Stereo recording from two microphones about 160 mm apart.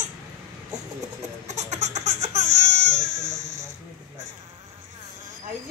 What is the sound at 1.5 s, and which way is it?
Baby cry, 45° right (ahead or behind).